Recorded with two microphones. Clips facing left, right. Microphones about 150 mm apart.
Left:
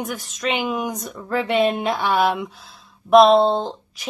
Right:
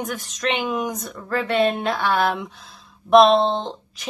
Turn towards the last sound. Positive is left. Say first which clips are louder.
# left 3 dB
turn(degrees=0)  # may be behind; listen again after turning